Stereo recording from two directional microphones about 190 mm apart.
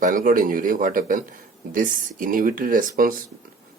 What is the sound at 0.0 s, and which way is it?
Speech, 45° right (ahead or behind).